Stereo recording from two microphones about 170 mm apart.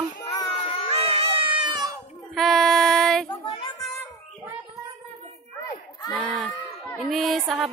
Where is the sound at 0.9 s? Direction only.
35° right (ahead or behind).